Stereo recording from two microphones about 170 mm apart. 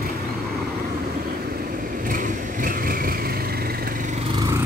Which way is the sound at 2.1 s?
55° right (ahead or behind).